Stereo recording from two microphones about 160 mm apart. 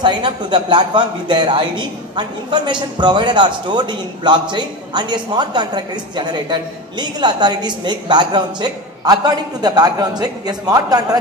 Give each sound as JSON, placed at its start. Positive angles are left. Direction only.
{"t": 0.0, "sound": "a man's voice", "side_deg": -30}